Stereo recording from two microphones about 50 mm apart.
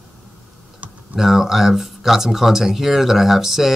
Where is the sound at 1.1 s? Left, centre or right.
Centre.